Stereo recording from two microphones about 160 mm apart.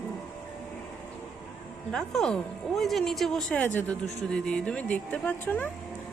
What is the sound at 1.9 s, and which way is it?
Speech, 5° left (ahead or behind).